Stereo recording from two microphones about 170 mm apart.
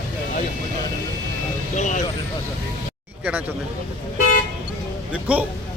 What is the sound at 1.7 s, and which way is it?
Speech, 45° left (ahead or behind).